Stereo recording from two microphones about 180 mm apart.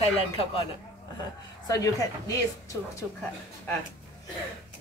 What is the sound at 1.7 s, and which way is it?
Speech, 20° left (ahead or behind).